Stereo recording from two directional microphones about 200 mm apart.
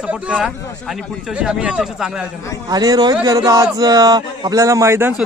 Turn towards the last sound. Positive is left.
turn(degrees=-10)  # may be behind; listen again after turning